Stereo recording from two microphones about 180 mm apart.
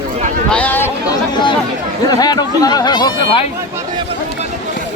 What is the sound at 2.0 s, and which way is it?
Speech, 20° left (ahead or behind).